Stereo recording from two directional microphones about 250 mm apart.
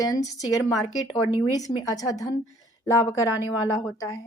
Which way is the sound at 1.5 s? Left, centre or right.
Centre.